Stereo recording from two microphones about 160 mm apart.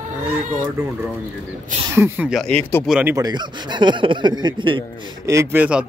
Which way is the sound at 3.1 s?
25° right (ahead or behind).